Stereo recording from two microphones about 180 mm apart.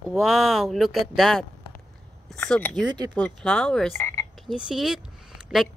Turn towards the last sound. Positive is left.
turn(degrees=0)  # may be behind; listen again after turning